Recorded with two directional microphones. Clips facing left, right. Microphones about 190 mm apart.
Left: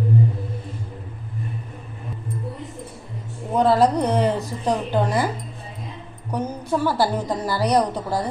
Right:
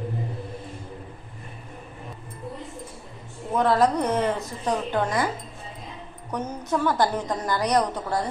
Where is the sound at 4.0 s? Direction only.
35° left (ahead or behind).